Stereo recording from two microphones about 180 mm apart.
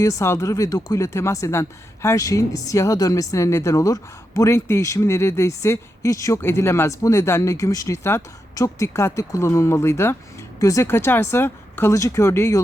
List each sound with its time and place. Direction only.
0.0 s speech: 15° left (ahead or behind)